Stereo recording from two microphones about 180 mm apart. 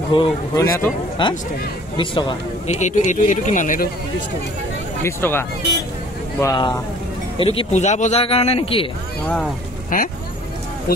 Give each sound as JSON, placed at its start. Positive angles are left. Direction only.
{"t": 0.1, "sound": "a man's voice", "side_deg": 30}
{"t": 0.6, "sound": "speech", "side_deg": 15}
{"t": 1.2, "sound": "a man's voice", "side_deg": 25}
{"t": 2.8, "sound": "speech", "side_deg": 45}
{"t": 5.0, "sound": "speech", "side_deg": 10}
{"t": 6.4, "sound": "a man's voice", "side_deg": 20}
{"t": 9.2, "sound": "speech", "side_deg": 5}
{"t": 9.9, "sound": "speech", "side_deg": 50}